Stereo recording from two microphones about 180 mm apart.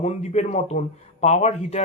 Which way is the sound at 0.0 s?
40° left (ahead or behind).